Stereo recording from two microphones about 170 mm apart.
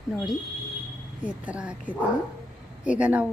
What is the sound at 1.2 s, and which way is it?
A woman's voice, 5° right (ahead or behind).